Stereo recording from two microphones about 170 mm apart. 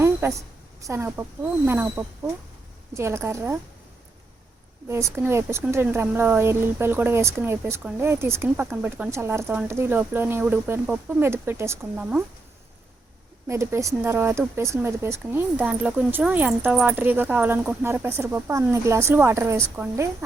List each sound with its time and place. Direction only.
0.0 s a woman's voice: 15° right (ahead or behind)
4.9 s speech: 15° right (ahead or behind)
13.5 s speech: 15° right (ahead or behind)